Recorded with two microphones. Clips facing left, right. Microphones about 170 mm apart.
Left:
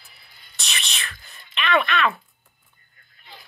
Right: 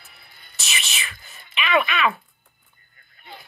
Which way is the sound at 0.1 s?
55° right (ahead or behind).